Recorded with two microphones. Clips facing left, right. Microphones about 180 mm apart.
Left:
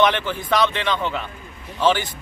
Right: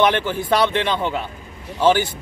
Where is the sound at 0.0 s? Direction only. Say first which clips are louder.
Right 1 dB; 10° right (ahead or behind).